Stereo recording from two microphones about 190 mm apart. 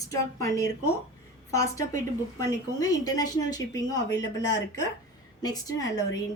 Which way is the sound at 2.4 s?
20° left (ahead or behind).